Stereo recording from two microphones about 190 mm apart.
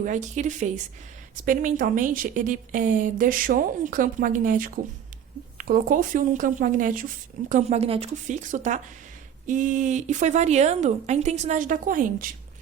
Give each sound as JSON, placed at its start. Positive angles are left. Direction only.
{"t": 0.0, "sound": "a woman's voice", "side_deg": -40}
{"t": 7.5, "sound": "a woman's voice", "side_deg": -35}